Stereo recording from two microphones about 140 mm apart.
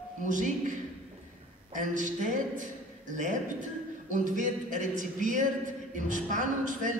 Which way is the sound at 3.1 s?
65° right (ahead or behind).